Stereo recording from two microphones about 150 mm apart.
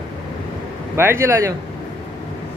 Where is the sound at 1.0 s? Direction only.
15° right (ahead or behind).